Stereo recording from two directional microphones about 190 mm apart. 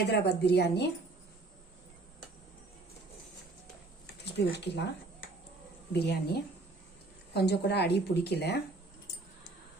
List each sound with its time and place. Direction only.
0.0 s a woman's voice: 60° left (ahead or behind)
4.0 s speech: 60° left (ahead or behind)
5.9 s a woman's voice: 60° left (ahead or behind)
7.3 s a woman's voice: 60° left (ahead or behind)